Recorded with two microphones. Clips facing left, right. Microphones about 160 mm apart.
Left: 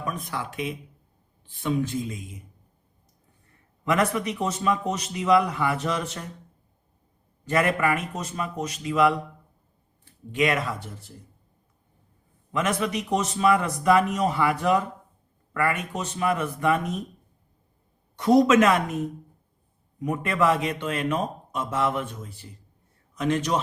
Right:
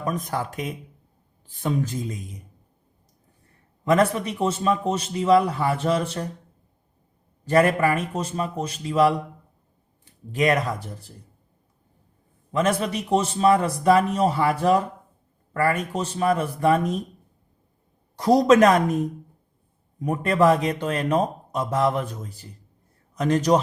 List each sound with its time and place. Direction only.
0.0 s a man's voice: 40° right (ahead or behind)
3.8 s a man's voice: 30° right (ahead or behind)
7.4 s a man's voice: 35° right (ahead or behind)
10.3 s a man's voice: 40° right (ahead or behind)
12.5 s a man's voice: 30° right (ahead or behind)
18.2 s a man's voice: 35° right (ahead or behind)